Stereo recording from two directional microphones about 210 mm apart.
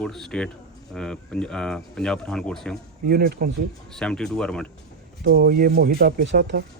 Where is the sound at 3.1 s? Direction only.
45° right (ahead or behind).